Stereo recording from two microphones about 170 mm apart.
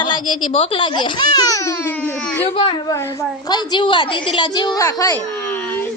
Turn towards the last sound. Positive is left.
turn(degrees=10)  # may be behind; listen again after turning